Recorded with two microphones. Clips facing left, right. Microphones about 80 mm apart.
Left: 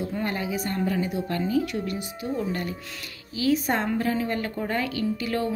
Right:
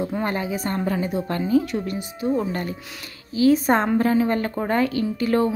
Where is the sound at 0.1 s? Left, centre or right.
Right.